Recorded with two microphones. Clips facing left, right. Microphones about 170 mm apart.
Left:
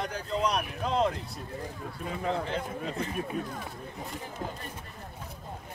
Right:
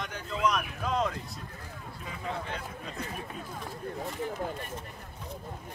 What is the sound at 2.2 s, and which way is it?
Speech, 30° left (ahead or behind).